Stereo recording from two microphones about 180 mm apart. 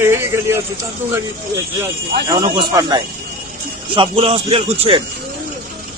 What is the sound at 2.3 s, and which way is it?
Speech, 25° right (ahead or behind).